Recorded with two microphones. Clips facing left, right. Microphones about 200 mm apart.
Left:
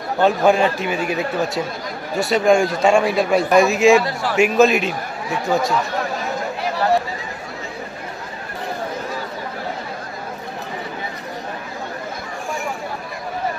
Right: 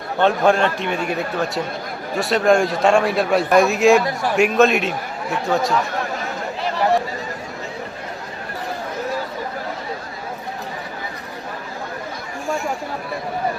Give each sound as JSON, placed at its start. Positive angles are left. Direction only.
{"t": 0.2, "sound": "a man's voice", "side_deg": 5}
{"t": 4.0, "sound": "a man's voice", "side_deg": -20}
{"t": 4.4, "sound": "a man's voice", "side_deg": 0}